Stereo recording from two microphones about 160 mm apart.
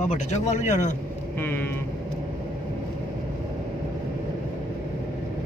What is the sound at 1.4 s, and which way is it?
Speech, 15° left (ahead or behind).